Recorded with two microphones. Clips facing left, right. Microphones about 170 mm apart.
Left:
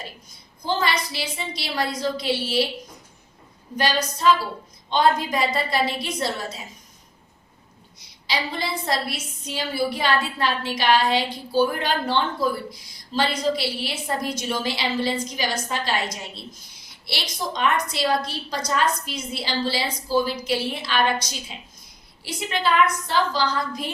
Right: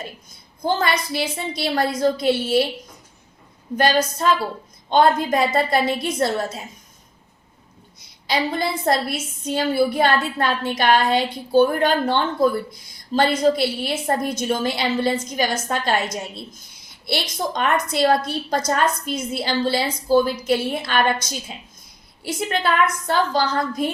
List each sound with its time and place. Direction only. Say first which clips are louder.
0.6 s a woman's voice: right 3 dB; 50° right (ahead or behind)
3.8 s a woman's voice: right 5 dB; 50° right (ahead or behind)
7.9 s a woman's voice: right 5 dB; 50° right (ahead or behind)
17.1 s a woman's voice: right 5 dB; 50° right (ahead or behind)
22.4 s a woman's voice: right 1 dB; 50° right (ahead or behind)